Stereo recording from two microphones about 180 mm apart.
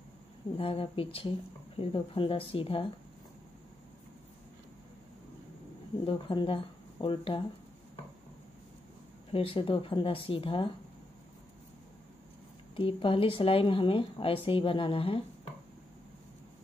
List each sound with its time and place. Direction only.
0.6 s a woman's voice: 30° left (ahead or behind)
6.0 s speech: 30° left (ahead or behind)
9.3 s speech: 30° left (ahead or behind)
12.7 s speech: 30° left (ahead or behind)